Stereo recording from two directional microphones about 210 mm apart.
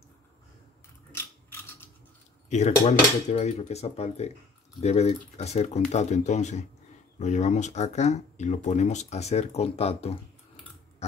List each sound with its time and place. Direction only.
1.1 s mechanisms: 10° left (ahead or behind)
2.5 s speech: 35° left (ahead or behind)